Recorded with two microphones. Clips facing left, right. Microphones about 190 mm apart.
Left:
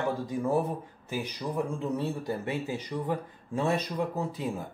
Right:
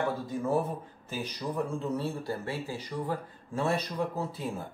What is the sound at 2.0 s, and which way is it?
Speech, 20° left (ahead or behind).